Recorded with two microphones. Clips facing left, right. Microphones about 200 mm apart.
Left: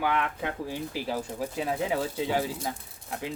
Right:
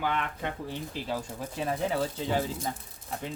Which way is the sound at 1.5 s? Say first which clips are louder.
Even; 10° left (ahead or behind).